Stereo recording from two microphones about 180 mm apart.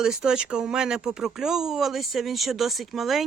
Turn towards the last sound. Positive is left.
turn(degrees=0)  # may be behind; listen again after turning